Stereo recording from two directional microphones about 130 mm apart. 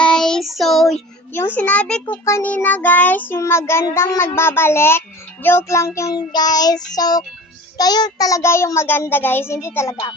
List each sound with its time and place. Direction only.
0.0 s child singing: 5° left (ahead or behind)
1.3 s a child's voice: 15° left (ahead or behind)
2.2 s a child's voice: 20° left (ahead or behind)
2.5 s child singing: 15° left (ahead or behind)
3.9 s a child's voice: 20° left (ahead or behind)